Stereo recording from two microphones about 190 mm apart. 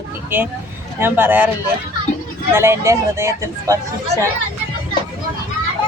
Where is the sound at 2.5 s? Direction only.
15° right (ahead or behind).